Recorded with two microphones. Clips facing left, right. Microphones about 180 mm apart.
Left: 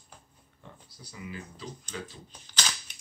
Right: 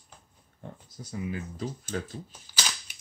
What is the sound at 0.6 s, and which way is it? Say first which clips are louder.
Speech: right 7 dB; 45° right (ahead or behind).